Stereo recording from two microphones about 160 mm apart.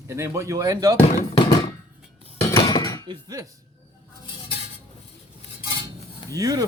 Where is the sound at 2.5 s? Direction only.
25° left (ahead or behind).